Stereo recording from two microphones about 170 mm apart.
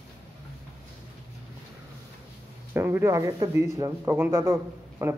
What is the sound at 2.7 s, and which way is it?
Speech, 15° right (ahead or behind).